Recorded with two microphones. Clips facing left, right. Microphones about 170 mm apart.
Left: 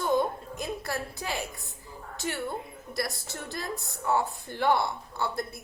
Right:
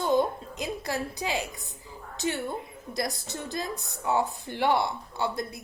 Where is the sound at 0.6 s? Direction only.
20° right (ahead or behind).